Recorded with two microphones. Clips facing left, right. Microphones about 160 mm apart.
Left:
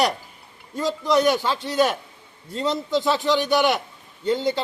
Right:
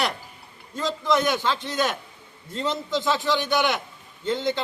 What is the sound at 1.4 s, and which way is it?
Speech, 10° left (ahead or behind).